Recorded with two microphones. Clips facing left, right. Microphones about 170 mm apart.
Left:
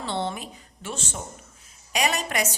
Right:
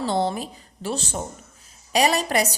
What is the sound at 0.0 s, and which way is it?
A woman's voice, 40° right (ahead or behind).